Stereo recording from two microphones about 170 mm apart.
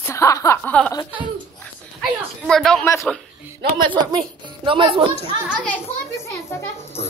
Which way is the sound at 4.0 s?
30° right (ahead or behind).